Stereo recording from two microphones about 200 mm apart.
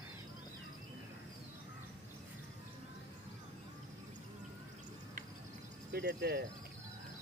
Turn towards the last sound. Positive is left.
turn(degrees=-55)  # may be behind; listen again after turning